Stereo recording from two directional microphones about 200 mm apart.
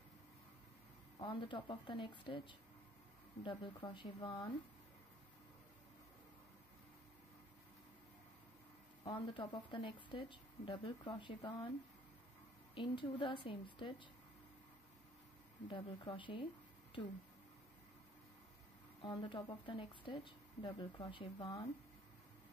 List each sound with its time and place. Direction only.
1.2 s speech: 25° left (ahead or behind)
9.0 s speech: 25° left (ahead or behind)
12.7 s speech: 25° left (ahead or behind)
15.7 s speech: 25° left (ahead or behind)
18.9 s speech: 25° left (ahead or behind)